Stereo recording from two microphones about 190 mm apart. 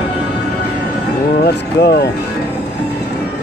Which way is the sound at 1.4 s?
60° left (ahead or behind).